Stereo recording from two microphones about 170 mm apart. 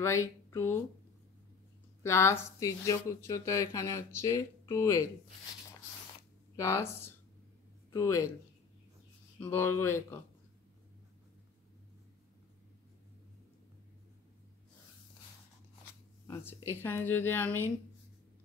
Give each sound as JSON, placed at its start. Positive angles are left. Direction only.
{"t": 0.0, "sound": "speech", "side_deg": 15}
{"t": 2.0, "sound": "speech", "side_deg": 15}
{"t": 6.5, "sound": "speech", "side_deg": 20}
{"t": 9.4, "sound": "speech", "side_deg": 15}
{"t": 16.6, "sound": "speech", "side_deg": 15}